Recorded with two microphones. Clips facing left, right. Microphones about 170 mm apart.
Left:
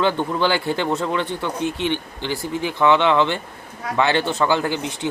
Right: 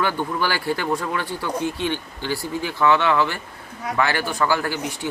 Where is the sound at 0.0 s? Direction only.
20° left (ahead or behind).